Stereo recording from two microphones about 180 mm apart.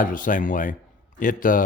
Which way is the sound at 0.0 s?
50° left (ahead or behind).